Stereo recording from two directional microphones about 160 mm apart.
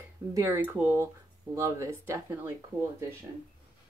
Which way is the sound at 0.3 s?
15° right (ahead or behind).